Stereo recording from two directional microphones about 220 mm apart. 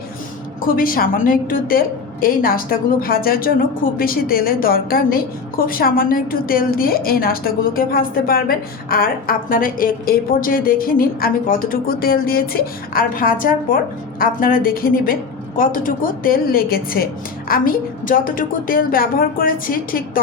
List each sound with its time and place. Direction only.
0.6 s a woman's voice: 40° left (ahead or behind)